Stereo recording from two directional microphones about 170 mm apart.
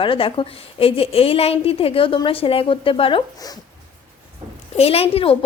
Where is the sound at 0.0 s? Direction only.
30° left (ahead or behind).